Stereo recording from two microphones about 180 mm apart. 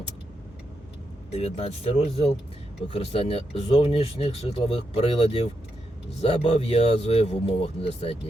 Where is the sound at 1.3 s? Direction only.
35° left (ahead or behind).